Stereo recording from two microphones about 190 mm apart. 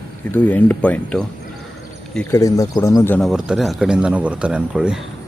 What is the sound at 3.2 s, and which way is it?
Speech, 5° right (ahead or behind).